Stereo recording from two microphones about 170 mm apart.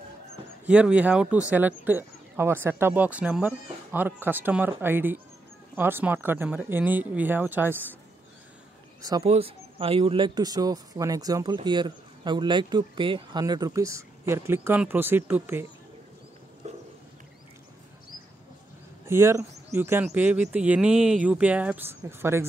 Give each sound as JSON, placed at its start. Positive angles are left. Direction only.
{"t": 0.7, "sound": "speech", "side_deg": -5}
{"t": 9.2, "sound": "speech", "side_deg": -35}
{"t": 19.0, "sound": "speech", "side_deg": -15}